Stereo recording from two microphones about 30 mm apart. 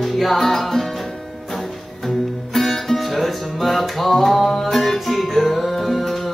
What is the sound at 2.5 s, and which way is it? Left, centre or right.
Music, centre.